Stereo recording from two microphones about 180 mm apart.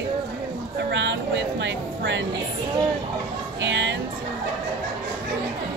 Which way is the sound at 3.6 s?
80° right.